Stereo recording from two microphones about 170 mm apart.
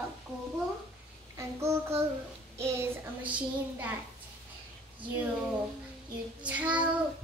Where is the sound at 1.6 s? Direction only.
15° right (ahead or behind).